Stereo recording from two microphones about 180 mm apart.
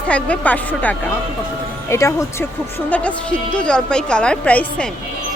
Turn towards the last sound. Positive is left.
turn(degrees=5)  # may be behind; listen again after turning